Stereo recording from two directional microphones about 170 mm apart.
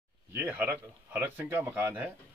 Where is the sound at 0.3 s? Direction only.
10° right (ahead or behind).